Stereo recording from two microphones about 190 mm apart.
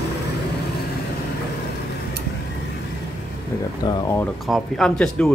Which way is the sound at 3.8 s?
20° left (ahead or behind).